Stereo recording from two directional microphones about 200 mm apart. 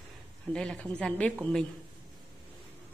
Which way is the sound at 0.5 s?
5° left (ahead or behind).